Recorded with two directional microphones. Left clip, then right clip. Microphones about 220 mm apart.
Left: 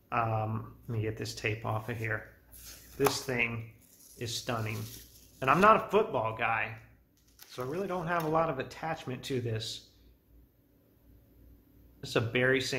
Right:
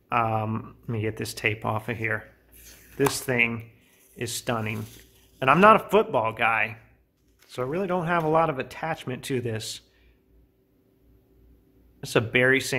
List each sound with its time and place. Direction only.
0.1 s speech: 50° right (ahead or behind)
12.0 s speech: 45° right (ahead or behind)